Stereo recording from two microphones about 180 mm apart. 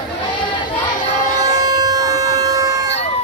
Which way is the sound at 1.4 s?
20° right (ahead or behind).